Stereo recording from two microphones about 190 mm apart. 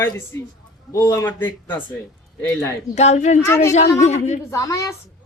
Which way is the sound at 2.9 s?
35° left (ahead or behind).